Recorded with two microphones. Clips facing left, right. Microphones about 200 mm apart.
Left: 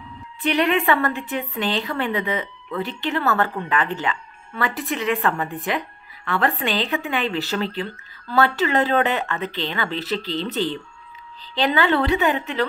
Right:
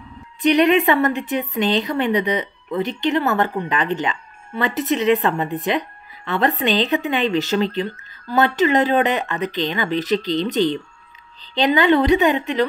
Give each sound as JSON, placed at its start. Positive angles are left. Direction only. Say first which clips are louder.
{"t": 0.4, "sound": "a woman's voice", "louder": "right 5 dB", "side_deg": -20}